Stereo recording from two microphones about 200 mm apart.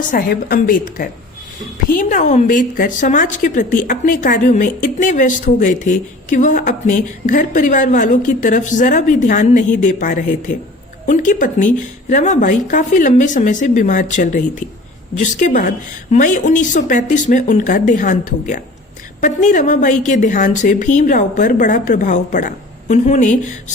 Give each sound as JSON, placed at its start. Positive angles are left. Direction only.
{"t": 0.1, "sound": "a woman's voice", "side_deg": 50}